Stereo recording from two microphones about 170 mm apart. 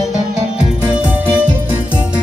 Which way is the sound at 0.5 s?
10° right (ahead or behind).